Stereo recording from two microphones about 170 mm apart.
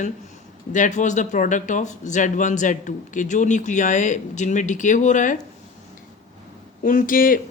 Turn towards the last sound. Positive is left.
turn(degrees=55)  # may be behind; listen again after turning